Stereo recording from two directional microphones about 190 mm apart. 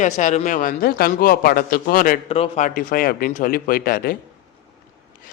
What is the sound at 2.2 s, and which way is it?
Speech, 30° left (ahead or behind).